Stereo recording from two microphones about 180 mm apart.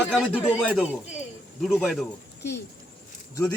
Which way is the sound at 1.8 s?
Centre (ahead or behind).